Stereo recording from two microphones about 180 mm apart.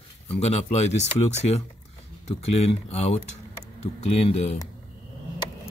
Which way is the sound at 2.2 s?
35° left (ahead or behind).